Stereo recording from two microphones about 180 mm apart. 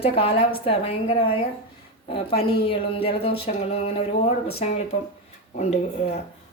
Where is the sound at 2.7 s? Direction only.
30° left (ahead or behind).